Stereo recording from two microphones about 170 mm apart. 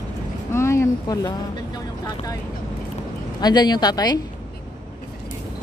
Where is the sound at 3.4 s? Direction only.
25° left (ahead or behind).